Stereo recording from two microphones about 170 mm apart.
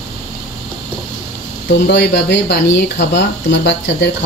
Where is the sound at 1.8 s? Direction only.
85° left.